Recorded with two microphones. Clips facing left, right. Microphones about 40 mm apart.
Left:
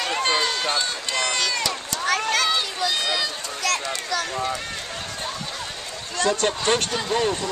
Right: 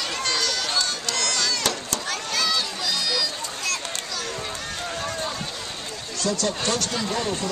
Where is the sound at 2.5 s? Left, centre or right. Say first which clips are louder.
Left 2 dB; left.